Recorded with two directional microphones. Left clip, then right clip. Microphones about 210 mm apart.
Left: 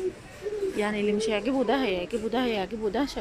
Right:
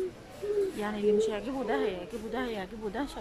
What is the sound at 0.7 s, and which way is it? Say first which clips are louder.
Speech: left 3 dB; centre (ahead or behind).